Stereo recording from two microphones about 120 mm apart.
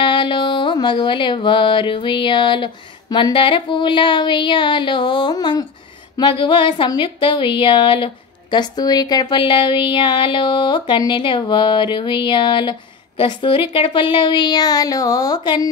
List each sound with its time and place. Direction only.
0.0 s a woman's voice: 40° left (ahead or behind)